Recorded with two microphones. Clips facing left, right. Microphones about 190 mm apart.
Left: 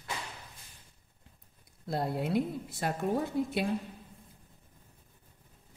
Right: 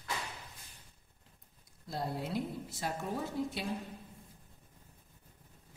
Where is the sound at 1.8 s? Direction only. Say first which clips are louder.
Left 5 dB; 60° left (ahead or behind).